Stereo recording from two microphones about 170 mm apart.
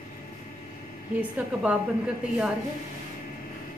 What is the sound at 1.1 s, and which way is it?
Speech, 10° right (ahead or behind).